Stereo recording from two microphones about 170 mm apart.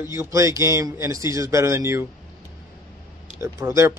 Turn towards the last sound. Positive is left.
turn(degrees=-15)  # may be behind; listen again after turning